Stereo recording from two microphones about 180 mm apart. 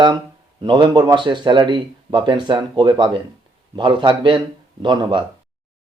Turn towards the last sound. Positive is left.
turn(degrees=-25)  # may be behind; listen again after turning